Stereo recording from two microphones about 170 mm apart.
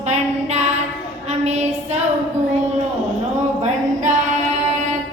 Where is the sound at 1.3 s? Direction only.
40° right (ahead or behind).